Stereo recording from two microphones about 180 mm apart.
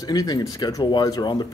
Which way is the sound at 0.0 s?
20° left (ahead or behind).